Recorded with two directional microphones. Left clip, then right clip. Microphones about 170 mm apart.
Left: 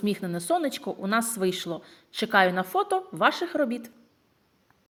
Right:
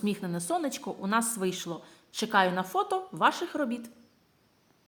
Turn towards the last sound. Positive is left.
turn(degrees=20)  # may be behind; listen again after turning